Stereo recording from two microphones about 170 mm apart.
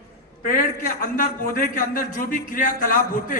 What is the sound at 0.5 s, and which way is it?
A man's voice, 55° left (ahead or behind).